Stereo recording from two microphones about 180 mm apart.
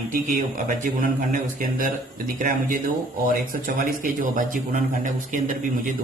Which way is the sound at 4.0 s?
45° right (ahead or behind).